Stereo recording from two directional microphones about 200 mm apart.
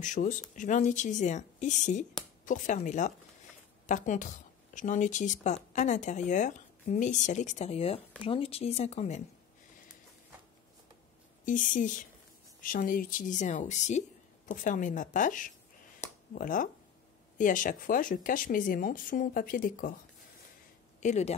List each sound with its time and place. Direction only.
0.0 s a woman's voice: 40° left (ahead or behind)
11.4 s a woman's voice: 40° left (ahead or behind)
21.0 s a woman's voice: 35° left (ahead or behind)